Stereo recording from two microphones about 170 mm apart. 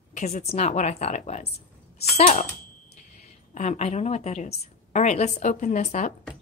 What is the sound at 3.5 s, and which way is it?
A woman's voice, 45° left (ahead or behind).